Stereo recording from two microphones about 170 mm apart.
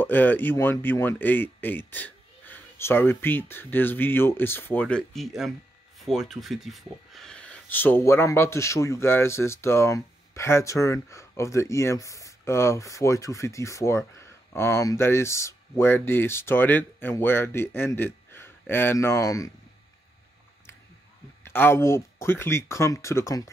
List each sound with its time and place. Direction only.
0.0 s speech: 10° left (ahead or behind)
21.5 s speech: 15° left (ahead or behind)